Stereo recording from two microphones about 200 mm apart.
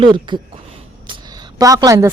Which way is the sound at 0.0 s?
25° right (ahead or behind).